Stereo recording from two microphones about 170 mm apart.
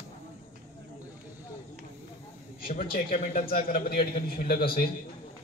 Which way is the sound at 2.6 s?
35° left (ahead or behind).